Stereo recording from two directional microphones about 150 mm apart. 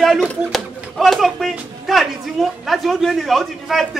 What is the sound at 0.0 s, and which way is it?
A man's voice, centre (ahead or behind).